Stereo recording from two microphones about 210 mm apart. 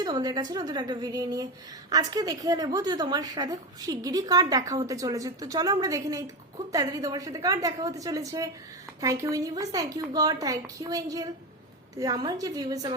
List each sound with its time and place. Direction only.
0.0 s a woman's voice: 20° right (ahead or behind)